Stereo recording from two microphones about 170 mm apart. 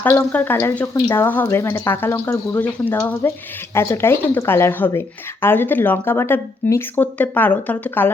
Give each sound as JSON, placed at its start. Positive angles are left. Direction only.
{"t": 0.0, "sound": "speech", "side_deg": 10}